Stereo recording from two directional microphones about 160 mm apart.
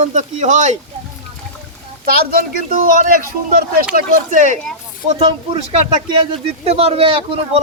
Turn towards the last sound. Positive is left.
turn(degrees=-35)  # may be behind; listen again after turning